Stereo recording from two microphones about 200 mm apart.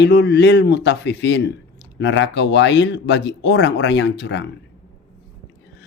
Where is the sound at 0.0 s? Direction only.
60° left (ahead or behind).